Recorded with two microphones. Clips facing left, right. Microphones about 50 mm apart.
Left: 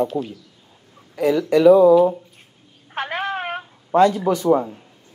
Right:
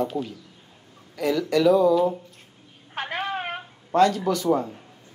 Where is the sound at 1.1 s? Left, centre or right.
Centre.